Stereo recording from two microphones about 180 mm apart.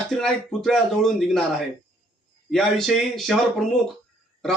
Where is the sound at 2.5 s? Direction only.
Centre (ahead or behind).